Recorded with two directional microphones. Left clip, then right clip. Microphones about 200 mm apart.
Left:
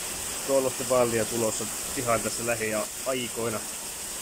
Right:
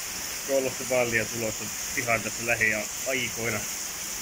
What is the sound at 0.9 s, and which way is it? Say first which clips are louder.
Speech: left 1 dB; 20° left (ahead or behind).